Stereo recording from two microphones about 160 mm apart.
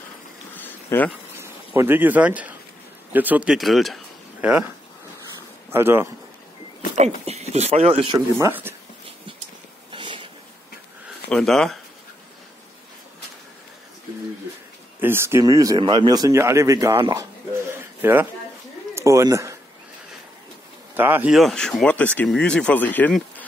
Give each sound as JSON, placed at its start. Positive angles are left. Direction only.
{"t": 0.6, "sound": "a sound", "side_deg": 10}
{"t": 1.4, "sound": "speech", "side_deg": -15}
{"t": 5.7, "sound": "speech", "side_deg": -15}
{"t": 7.0, "sound": "speech", "side_deg": -45}
{"t": 8.4, "sound": "speech", "side_deg": -15}
{"t": 9.8, "sound": "a sound", "side_deg": -30}
{"t": 11.2, "sound": "speech", "side_deg": 5}
{"t": 15.0, "sound": "speech", "side_deg": -15}
{"t": 17.0, "sound": "a sound", "side_deg": -20}
{"t": 18.9, "sound": "speech", "side_deg": -20}
{"t": 20.9, "sound": "speech", "side_deg": -10}
{"t": 21.4, "sound": "speech", "side_deg": 0}